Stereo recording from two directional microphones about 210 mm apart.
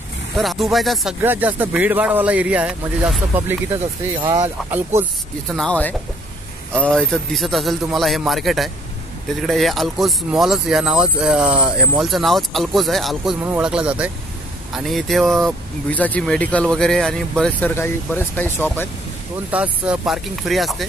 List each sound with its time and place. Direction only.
0.4 s speech: centre (ahead or behind)
4.2 s speech: 20° right (ahead or behind)
4.6 s speech: 10° right (ahead or behind)
5.5 s speech: 5° left (ahead or behind)
19.5 s speech: 5° right (ahead or behind)